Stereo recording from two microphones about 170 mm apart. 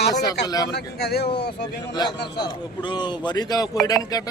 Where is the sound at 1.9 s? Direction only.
25° left (ahead or behind).